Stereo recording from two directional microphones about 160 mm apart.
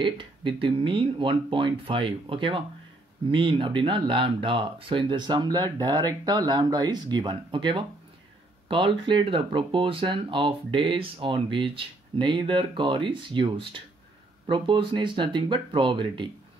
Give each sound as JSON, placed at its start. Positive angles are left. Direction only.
{"t": 0.0, "sound": "speech", "side_deg": -30}